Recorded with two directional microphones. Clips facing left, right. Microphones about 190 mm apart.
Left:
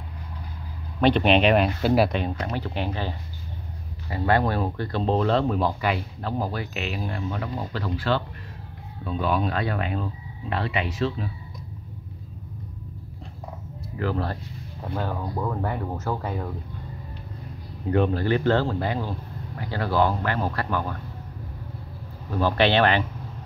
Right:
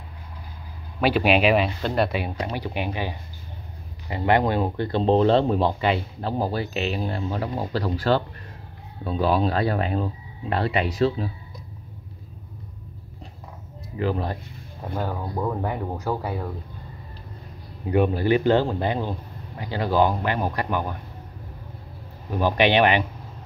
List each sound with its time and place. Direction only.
1.0 s speech: 5° right (ahead or behind)
2.4 s a man's voice: 10° right (ahead or behind); by 11.2 s 35° right (ahead or behind)
13.9 s a man's voice: 15° right (ahead or behind)
17.8 s a man's voice: 10° right (ahead or behind)
22.3 s a man's voice: 15° right (ahead or behind)